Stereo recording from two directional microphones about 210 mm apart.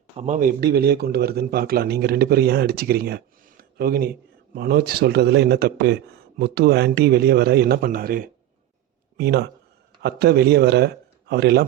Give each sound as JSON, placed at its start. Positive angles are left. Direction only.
{"t": 0.2, "sound": "speech", "side_deg": -35}